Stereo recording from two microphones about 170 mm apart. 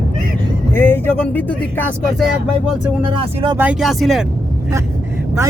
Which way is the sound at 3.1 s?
30° right (ahead or behind).